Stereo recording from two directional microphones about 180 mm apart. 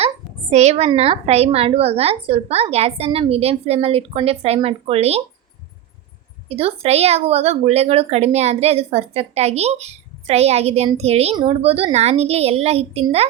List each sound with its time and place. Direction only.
0.5 s a woman's voice: 40° right (ahead or behind)
6.5 s a woman's voice: 35° right (ahead or behind)